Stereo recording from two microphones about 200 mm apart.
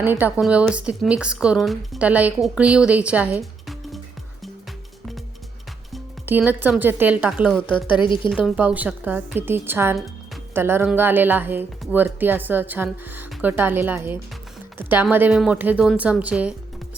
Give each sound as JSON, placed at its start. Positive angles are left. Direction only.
{"t": 0.0, "sound": "speech", "side_deg": -10}
{"t": 6.2, "sound": "speech", "side_deg": -10}
{"t": 8.0, "sound": "a woman's voice", "side_deg": 25}
{"t": 8.3, "sound": "speech", "side_deg": -5}